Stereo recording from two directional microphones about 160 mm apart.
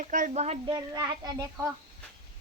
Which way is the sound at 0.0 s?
55° right (ahead or behind).